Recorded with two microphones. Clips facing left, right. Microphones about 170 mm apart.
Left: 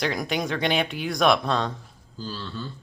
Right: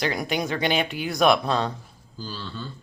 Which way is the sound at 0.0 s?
Centre (ahead or behind).